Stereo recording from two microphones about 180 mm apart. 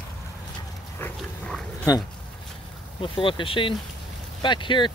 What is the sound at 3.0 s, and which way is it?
Speech, 30° left (ahead or behind).